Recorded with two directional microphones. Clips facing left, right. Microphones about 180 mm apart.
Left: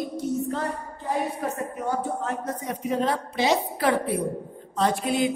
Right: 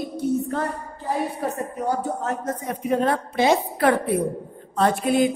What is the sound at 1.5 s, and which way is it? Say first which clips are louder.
Speech: right 3 dB; 35° right (ahead or behind).